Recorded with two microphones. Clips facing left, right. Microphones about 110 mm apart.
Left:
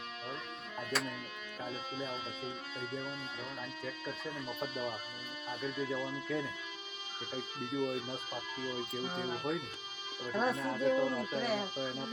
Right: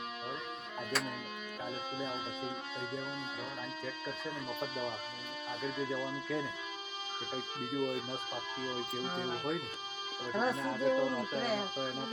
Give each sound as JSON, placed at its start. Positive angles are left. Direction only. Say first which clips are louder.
{"t": 0.8, "sound": "speech", "louder": "even", "side_deg": -5}
{"t": 1.6, "sound": "speech", "louder": "right 1 dB", "side_deg": -15}
{"t": 4.6, "sound": "speech", "louder": "left 1 dB", "side_deg": 0}